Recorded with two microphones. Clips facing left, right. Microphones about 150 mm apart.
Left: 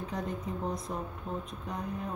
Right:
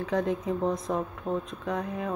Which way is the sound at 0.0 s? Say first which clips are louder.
Right 8 dB; 90° right.